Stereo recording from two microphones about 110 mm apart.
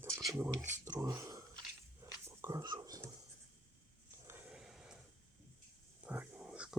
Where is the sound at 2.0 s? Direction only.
30° right (ahead or behind).